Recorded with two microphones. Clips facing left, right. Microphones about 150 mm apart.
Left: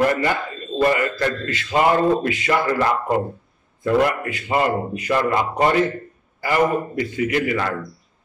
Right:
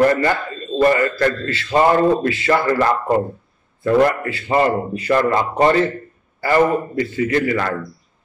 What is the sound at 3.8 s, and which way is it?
A man's voice, 15° left (ahead or behind).